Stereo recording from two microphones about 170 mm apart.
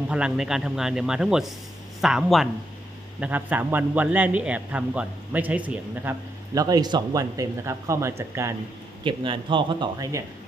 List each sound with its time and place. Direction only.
0.1 s a man's voice: 5° right (ahead or behind)
6.5 s speech: 20° right (ahead or behind)
9.0 s speech: 30° right (ahead or behind)